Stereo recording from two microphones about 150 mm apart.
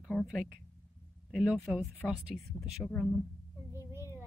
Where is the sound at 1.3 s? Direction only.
5° right (ahead or behind).